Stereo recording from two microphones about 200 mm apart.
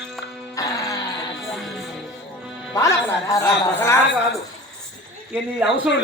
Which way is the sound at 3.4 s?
15° left (ahead or behind).